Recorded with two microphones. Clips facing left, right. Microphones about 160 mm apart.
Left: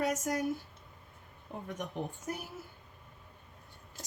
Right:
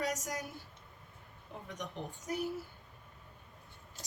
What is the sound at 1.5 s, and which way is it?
Speech, 50° left (ahead or behind).